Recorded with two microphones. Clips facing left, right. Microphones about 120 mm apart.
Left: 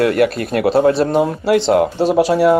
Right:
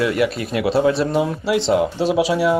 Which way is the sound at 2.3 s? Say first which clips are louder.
Left 5 dB; 55° left (ahead or behind).